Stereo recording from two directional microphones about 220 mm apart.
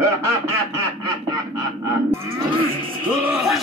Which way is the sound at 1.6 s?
15° right (ahead or behind).